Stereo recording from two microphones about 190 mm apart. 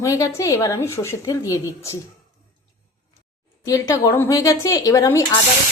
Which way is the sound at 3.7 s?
15° left (ahead or behind).